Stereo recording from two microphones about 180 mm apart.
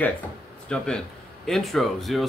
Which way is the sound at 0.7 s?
5° left (ahead or behind).